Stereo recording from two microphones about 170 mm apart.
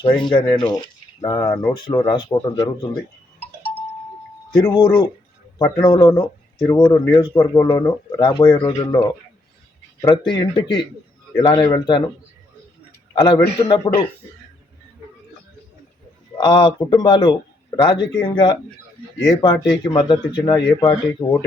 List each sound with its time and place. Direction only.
0.0 s speech: 25° left (ahead or behind)
4.6 s speech: 25° left (ahead or behind)
13.1 s speech: 25° left (ahead or behind)
16.4 s speech: 25° left (ahead or behind)